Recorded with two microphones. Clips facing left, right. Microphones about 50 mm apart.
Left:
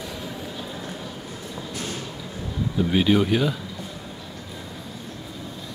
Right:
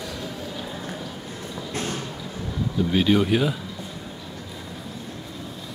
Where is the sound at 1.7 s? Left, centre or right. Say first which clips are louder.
Right 4 dB; right.